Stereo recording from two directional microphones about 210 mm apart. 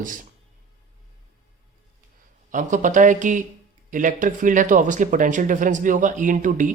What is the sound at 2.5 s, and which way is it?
Speech, 40° right (ahead or behind).